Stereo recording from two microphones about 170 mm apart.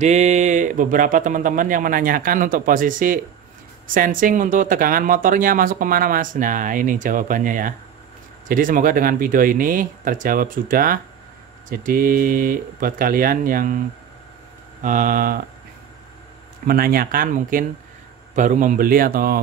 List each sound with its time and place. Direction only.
0.0 s speech: 40° right (ahead or behind)
16.6 s speech: 60° right (ahead or behind)